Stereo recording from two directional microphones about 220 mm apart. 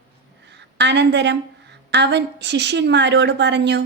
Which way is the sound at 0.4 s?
50° right (ahead or behind).